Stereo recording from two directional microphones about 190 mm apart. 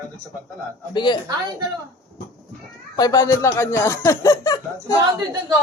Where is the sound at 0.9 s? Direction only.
25° left (ahead or behind).